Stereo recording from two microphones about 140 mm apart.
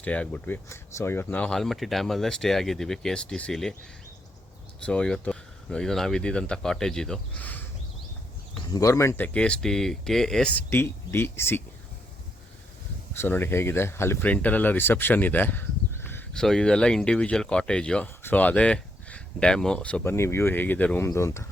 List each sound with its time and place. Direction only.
0.0 s speech: 10° left (ahead or behind)
4.9 s speech: 5° left (ahead or behind)
8.7 s speech: 20° left (ahead or behind)
13.1 s speech: 15° left (ahead or behind)
16.3 s speech: 5° left (ahead or behind); by 21.4 s 20° left (ahead or behind)